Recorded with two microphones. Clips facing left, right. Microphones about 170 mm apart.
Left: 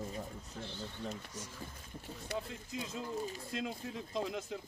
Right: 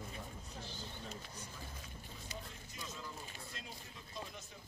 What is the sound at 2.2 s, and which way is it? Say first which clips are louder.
Speech: left 12 dB; 75° left (ahead or behind).